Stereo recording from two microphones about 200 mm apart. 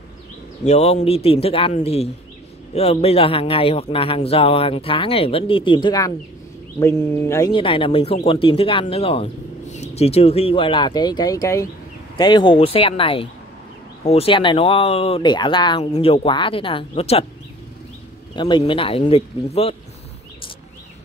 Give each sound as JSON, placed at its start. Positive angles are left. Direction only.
{"t": 0.7, "sound": "speech", "side_deg": 35}
{"t": 18.3, "sound": "speech", "side_deg": 25}